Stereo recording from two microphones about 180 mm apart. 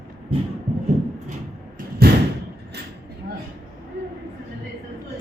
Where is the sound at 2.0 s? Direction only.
60° right (ahead or behind).